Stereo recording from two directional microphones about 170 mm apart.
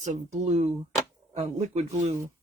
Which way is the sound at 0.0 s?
45° right (ahead or behind).